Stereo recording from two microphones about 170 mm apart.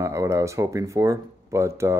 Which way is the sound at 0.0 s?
15° right (ahead or behind).